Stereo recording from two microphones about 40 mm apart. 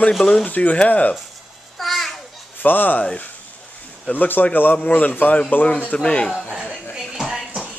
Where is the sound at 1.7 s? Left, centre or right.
Centre.